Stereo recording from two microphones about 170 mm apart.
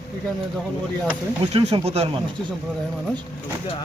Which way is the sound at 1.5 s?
35° right (ahead or behind).